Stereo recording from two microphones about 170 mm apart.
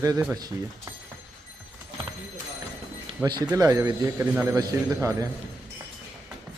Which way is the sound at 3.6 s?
20° right (ahead or behind).